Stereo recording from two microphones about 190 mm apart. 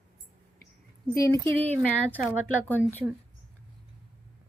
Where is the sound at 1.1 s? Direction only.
15° left (ahead or behind).